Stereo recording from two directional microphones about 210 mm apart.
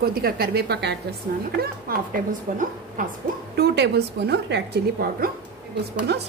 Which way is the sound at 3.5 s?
50° right (ahead or behind).